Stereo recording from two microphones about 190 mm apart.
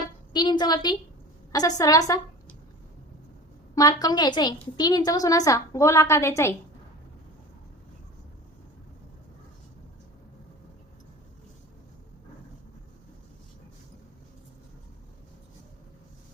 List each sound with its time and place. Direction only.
0.3 s a woman's voice: 20° left (ahead or behind)
3.8 s a woman's voice: 20° left (ahead or behind)